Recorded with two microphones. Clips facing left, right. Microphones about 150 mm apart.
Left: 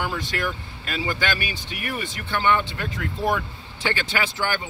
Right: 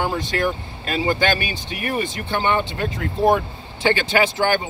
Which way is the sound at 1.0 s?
25° right (ahead or behind).